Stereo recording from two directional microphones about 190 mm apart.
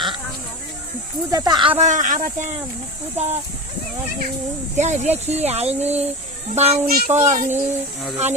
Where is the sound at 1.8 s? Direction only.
40° right (ahead or behind).